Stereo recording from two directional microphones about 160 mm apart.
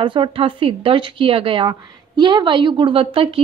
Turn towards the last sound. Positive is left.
turn(degrees=-35)  # may be behind; listen again after turning